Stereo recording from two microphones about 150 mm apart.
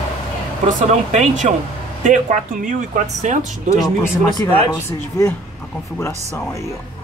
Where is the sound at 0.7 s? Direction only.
50° right (ahead or behind).